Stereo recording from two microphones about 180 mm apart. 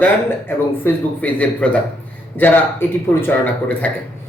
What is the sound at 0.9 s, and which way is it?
A man's voice, 15° left (ahead or behind).